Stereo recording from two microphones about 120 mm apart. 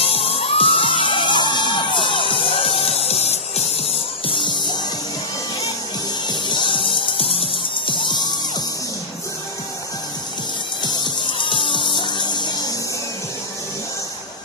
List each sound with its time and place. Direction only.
0.0 s music: 55° left (ahead or behind)
4.3 s music: 45° left (ahead or behind)
6.2 s music: 40° left (ahead or behind)
10.8 s music: 40° left (ahead or behind)